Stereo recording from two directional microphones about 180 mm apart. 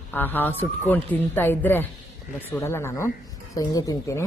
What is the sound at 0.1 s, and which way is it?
A woman's voice, 10° left (ahead or behind).